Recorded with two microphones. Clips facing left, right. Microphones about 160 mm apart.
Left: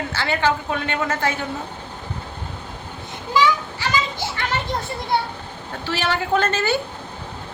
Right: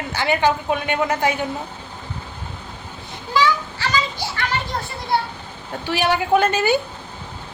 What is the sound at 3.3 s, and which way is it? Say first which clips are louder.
Children playing: even; 15° left (ahead or behind).